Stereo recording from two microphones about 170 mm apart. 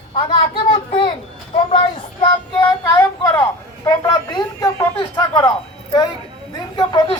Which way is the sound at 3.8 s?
20° left (ahead or behind).